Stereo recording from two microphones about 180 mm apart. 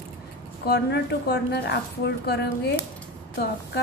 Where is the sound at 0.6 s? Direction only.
65° left (ahead or behind).